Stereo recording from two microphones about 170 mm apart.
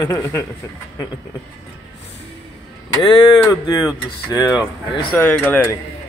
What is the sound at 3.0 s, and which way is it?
A man's voice, 30° left (ahead or behind).